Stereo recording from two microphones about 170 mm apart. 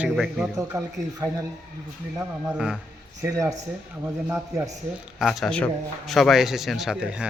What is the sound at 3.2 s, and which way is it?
A man's voice, 20° right (ahead or behind).